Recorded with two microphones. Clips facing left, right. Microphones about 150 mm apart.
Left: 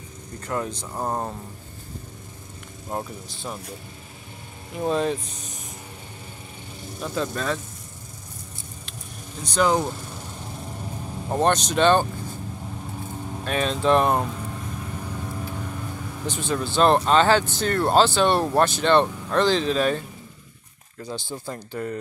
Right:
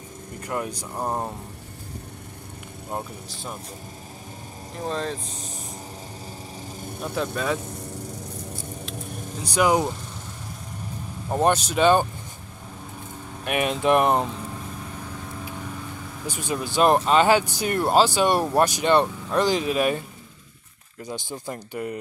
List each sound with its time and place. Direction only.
0.5 s speech: 15° right (ahead or behind)
0.9 s speech: centre (ahead or behind)
4.7 s speech: 5° left (ahead or behind)
7.0 s speech: 5° right (ahead or behind)
9.4 s speech: 10° right (ahead or behind)
11.3 s speech: 10° right (ahead or behind)
13.5 s speech: 15° right (ahead or behind)
15.5 s vehicle: centre (ahead or behind)
16.3 s speech: 10° right (ahead or behind)
21.1 s speech: 15° right (ahead or behind)